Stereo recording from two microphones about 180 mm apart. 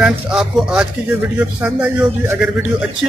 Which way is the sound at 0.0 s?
5° right (ahead or behind).